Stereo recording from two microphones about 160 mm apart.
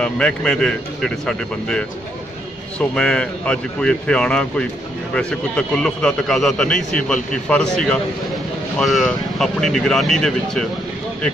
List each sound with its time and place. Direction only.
0.0 s a man's voice: 5° left (ahead or behind)